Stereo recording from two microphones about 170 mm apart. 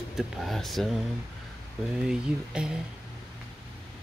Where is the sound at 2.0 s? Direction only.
5° right (ahead or behind).